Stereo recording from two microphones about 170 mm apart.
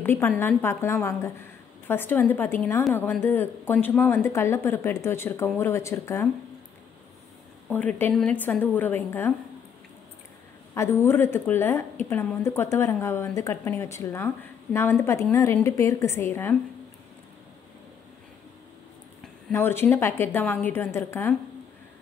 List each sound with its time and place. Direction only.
0.0 s a woman's voice: 15° left (ahead or behind)
7.7 s speech: 10° left (ahead or behind)
10.7 s speech: 15° left (ahead or behind)
19.5 s speech: 15° left (ahead or behind)